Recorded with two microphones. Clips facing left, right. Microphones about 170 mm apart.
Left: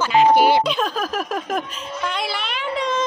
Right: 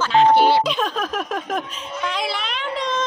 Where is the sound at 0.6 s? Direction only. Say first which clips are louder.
Left 1 dB; centre (ahead or behind).